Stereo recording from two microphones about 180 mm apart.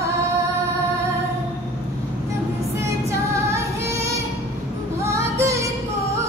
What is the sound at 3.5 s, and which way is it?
Female singing, 15° right (ahead or behind).